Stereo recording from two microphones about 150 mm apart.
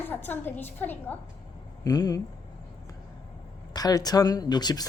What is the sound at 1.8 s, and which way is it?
Speech, 25° left (ahead or behind).